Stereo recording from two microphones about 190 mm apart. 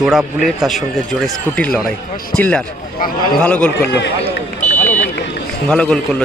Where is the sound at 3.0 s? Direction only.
50° left (ahead or behind).